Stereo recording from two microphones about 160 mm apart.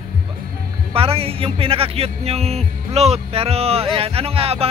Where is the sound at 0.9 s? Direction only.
35° right (ahead or behind).